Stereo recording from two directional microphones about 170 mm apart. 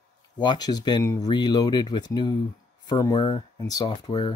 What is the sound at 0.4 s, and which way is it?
Speech, 25° left (ahead or behind).